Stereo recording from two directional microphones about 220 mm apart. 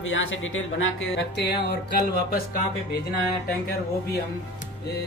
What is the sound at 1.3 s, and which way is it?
Music, 50° left (ahead or behind).